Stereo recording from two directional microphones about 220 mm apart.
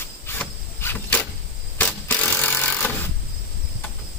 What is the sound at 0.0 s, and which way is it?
Cricket, 10° left (ahead or behind).